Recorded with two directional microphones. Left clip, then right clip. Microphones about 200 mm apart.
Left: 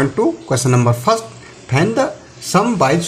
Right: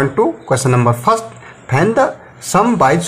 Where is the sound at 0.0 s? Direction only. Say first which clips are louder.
Right 2 dB; centre (ahead or behind).